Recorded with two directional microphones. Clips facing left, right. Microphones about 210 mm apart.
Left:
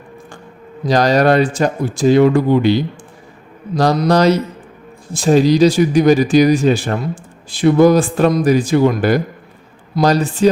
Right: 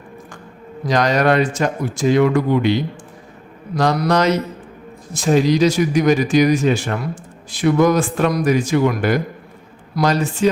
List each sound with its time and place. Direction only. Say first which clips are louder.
0.9 s speech: left 4 dB; 35° left (ahead or behind)
4.1 s speech: left 4 dB; 35° left (ahead or behind)